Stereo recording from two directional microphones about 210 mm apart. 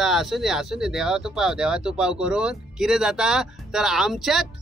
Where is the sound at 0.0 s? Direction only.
Centre (ahead or behind).